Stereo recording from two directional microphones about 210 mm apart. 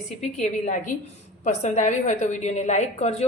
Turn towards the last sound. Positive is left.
turn(degrees=30)  # may be behind; listen again after turning